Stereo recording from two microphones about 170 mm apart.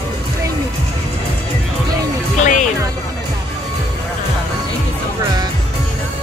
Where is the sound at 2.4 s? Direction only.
45° left (ahead or behind).